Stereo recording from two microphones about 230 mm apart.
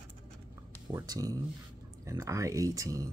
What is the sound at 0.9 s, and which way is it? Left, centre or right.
Speech, centre.